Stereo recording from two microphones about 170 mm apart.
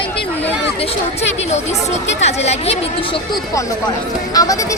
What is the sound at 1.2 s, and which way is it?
Speech, 40° left (ahead or behind).